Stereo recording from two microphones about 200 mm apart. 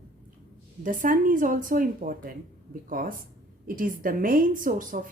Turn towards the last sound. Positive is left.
turn(degrees=-40)  # may be behind; listen again after turning